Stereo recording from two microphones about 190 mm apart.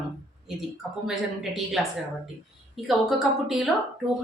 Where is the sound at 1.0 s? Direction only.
Centre (ahead or behind).